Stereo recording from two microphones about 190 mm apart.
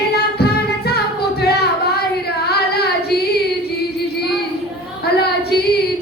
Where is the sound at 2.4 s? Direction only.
55° left (ahead or behind).